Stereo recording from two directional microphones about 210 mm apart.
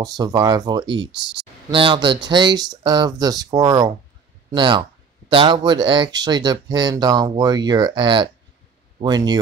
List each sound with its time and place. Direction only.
0.0 s speech: 20° right (ahead or behind)